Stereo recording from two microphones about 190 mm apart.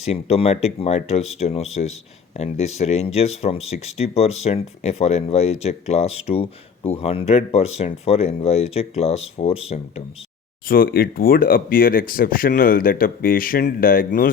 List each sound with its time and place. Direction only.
0.0 s speech: 30° left (ahead or behind)
10.7 s speech: 50° left (ahead or behind)